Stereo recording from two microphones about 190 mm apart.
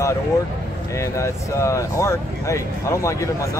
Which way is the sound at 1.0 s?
15° left (ahead or behind).